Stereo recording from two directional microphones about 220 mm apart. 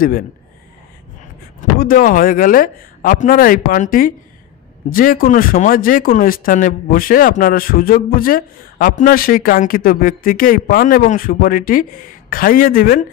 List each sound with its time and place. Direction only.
1.8 s speech: 40° left (ahead or behind)